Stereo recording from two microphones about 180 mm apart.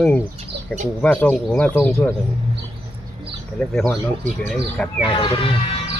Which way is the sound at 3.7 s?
Centre (ahead or behind).